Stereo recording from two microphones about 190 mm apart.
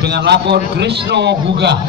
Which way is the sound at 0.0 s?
60° right (ahead or behind).